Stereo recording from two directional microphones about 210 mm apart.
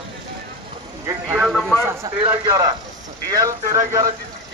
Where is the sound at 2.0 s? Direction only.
15° right (ahead or behind).